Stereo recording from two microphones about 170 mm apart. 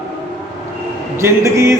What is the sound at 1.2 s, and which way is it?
Mantra, 15° right (ahead or behind).